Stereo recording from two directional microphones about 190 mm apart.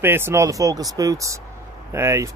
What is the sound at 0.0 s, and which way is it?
Speech, 10° right (ahead or behind).